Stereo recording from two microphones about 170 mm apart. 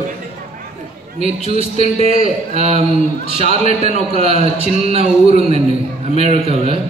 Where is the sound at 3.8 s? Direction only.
40° right (ahead or behind).